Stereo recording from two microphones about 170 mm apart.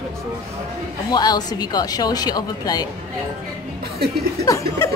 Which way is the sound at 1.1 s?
25° left (ahead or behind).